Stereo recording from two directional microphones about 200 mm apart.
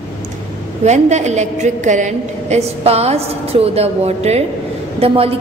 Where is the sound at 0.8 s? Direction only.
35° right (ahead or behind).